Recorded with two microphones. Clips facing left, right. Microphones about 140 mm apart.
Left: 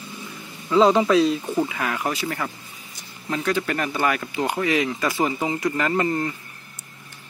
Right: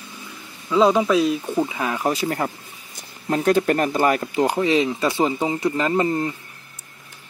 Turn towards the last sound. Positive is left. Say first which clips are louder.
# right 2 dB
turn(degrees=-20)  # may be behind; listen again after turning